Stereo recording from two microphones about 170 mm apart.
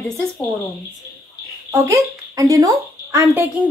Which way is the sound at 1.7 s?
20° right (ahead or behind).